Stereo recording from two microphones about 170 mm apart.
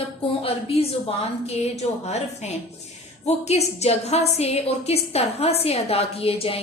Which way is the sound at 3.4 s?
40° left (ahead or behind).